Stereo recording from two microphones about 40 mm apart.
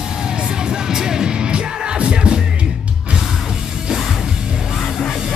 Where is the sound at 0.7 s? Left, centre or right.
Centre.